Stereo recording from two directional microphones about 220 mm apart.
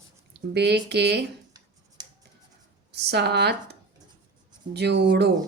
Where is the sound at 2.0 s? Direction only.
20° right (ahead or behind).